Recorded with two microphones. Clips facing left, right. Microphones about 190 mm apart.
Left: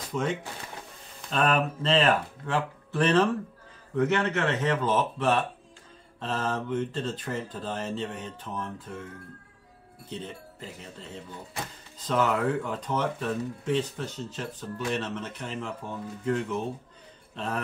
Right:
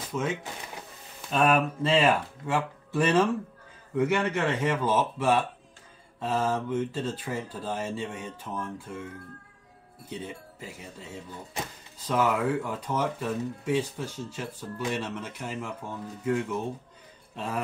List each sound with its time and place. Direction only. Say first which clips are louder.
1.3 s speech: right 2 dB; 10° right (ahead or behind)
10.0 s speech: right 1 dB; 10° right (ahead or behind)